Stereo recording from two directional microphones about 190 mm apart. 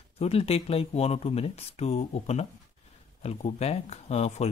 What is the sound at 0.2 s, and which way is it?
Speech, 30° left (ahead or behind).